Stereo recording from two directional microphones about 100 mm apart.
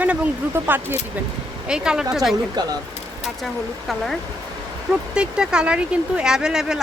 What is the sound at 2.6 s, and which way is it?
Speech, 45° right (ahead or behind).